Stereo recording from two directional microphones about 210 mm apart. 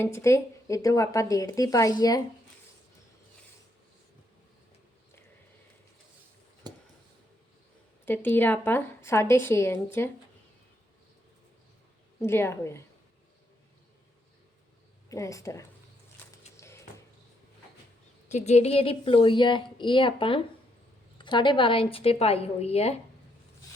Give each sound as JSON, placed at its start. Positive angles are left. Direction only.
{"t": 0.0, "sound": "speech", "side_deg": 15}
{"t": 6.6, "sound": "a sound", "side_deg": -20}
{"t": 8.0, "sound": "speech", "side_deg": 10}
{"t": 12.2, "sound": "speech", "side_deg": 10}
{"t": 15.1, "sound": "speech", "side_deg": 15}
{"t": 16.2, "sound": "a sound", "side_deg": 10}
{"t": 18.3, "sound": "a woman's voice", "side_deg": 35}